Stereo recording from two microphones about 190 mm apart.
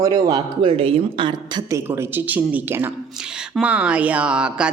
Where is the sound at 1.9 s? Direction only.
10° right (ahead or behind).